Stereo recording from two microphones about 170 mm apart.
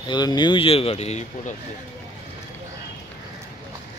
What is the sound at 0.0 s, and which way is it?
Speech, 25° left (ahead or behind).